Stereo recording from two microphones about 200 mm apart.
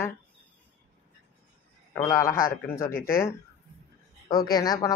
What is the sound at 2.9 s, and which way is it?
Speech, 45° left (ahead or behind).